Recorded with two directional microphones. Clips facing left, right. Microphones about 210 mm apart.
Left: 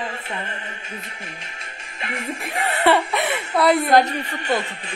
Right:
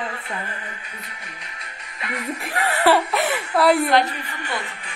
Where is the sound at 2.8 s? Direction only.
Centre (ahead or behind).